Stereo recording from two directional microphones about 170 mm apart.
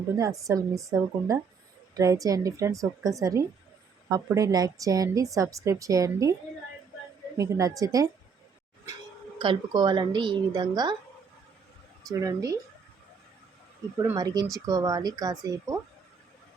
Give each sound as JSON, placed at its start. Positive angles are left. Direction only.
{"t": 0.2, "sound": "a woman's voice", "side_deg": -20}
{"t": 7.3, "sound": "a woman's voice", "side_deg": -20}
{"t": 9.4, "sound": "a woman's voice", "side_deg": -30}
{"t": 12.2, "sound": "a woman's voice", "side_deg": -20}
{"t": 14.0, "sound": "a woman's voice", "side_deg": -20}